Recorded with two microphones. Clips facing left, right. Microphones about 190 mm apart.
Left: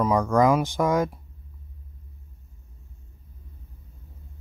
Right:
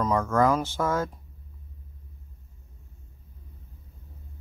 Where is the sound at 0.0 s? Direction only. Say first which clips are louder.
Left 3 dB; 15° left (ahead or behind).